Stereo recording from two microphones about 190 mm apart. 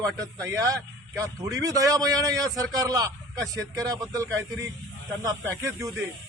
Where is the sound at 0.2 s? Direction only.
15° right (ahead or behind).